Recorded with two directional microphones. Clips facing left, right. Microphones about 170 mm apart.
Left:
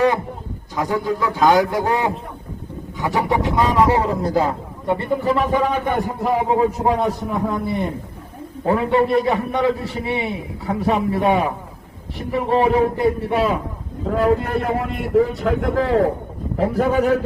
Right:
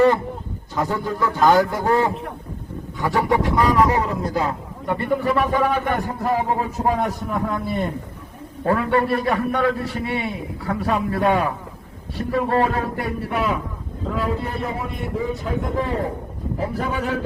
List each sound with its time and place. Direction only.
0.8 s a man's voice: 15° left (ahead or behind)
14.2 s a man's voice: 55° left (ahead or behind); by 16.0 s 90° left
16.6 s a man's voice: 50° left (ahead or behind)